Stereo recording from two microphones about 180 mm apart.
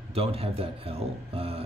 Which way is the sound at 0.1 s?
35° right (ahead or behind).